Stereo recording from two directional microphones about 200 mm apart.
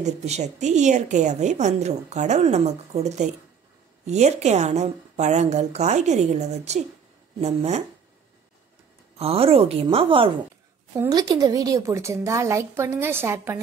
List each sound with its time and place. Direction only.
0.0 s a woman's voice: 35° right (ahead or behind)
9.2 s a woman's voice: 30° right (ahead or behind); by 13.6 s 10° right (ahead or behind)